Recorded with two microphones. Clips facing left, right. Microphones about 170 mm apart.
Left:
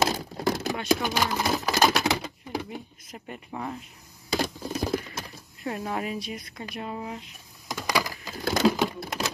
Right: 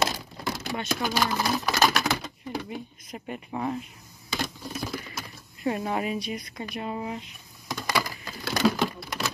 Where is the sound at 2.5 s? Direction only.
Centre (ahead or behind).